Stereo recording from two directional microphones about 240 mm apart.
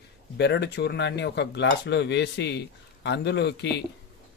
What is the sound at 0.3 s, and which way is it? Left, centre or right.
Speech, left.